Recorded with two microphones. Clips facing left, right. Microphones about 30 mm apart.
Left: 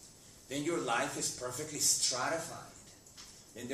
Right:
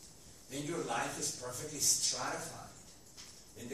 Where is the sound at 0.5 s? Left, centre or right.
Left.